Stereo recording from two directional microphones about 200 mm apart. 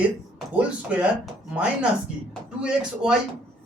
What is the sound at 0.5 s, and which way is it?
A woman's voice, 5° right (ahead or behind).